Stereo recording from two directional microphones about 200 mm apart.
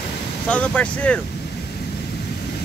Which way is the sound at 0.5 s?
5° left (ahead or behind).